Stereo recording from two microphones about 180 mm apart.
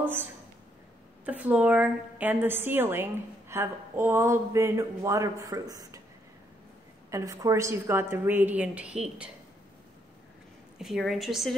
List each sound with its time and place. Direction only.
0.0 s a woman's voice: 10° right (ahead or behind)
7.1 s a woman's voice: 20° right (ahead or behind)
10.8 s a woman's voice: centre (ahead or behind)